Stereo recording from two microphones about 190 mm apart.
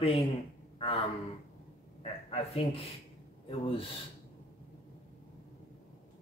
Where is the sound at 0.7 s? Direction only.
30° left (ahead or behind).